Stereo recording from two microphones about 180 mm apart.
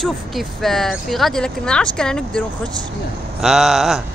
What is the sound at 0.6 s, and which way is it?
A man's voice, centre (ahead or behind).